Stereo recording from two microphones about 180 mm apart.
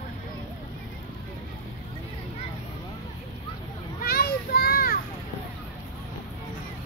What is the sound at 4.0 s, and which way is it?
Children playing, 55° left (ahead or behind).